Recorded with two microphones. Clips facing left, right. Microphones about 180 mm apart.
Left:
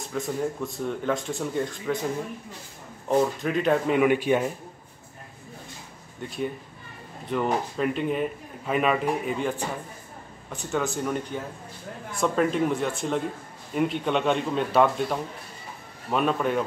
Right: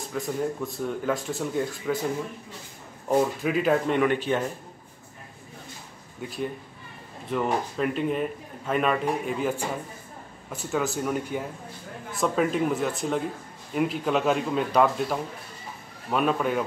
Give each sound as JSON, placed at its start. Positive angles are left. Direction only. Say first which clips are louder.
{"t": 0.1, "sound": "a man's voice", "louder": "even", "side_deg": 0}
{"t": 3.1, "sound": "a man's voice", "louder": "even", "side_deg": -5}
{"t": 7.2, "sound": "a man's voice", "louder": "left 1 dB", "side_deg": 0}